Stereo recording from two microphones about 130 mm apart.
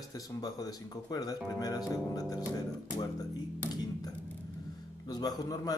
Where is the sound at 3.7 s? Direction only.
30° left (ahead or behind).